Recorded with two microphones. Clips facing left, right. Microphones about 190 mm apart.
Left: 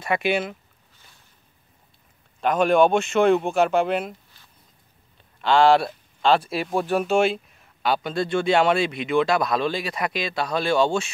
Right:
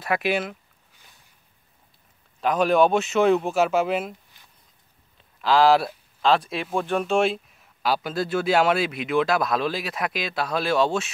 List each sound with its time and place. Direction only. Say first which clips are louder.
0.0 s speech: left 1 dB; centre (ahead or behind)
2.4 s speech: left 1 dB; centre (ahead or behind)
5.1 s speech: left 1 dB; centre (ahead or behind)